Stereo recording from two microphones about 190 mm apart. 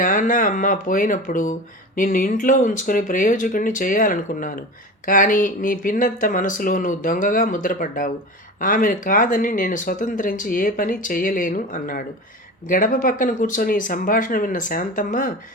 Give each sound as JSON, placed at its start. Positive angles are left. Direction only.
{"t": 0.0, "sound": "speech", "side_deg": 45}